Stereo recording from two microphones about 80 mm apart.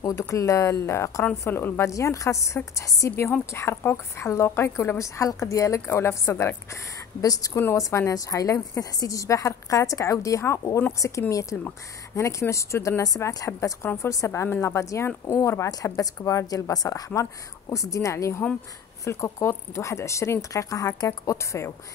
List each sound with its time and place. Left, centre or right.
0.3 s a woman's voice: left
1.9 s a woman's voice: left
3.1 s a woman's voice: left
7.2 s a woman's voice: left
7.5 s a woman's voice: left
13.5 s a woman's voice: left